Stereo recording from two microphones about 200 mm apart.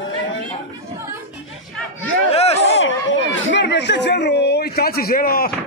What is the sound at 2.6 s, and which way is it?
Chatter, 60° left (ahead or behind).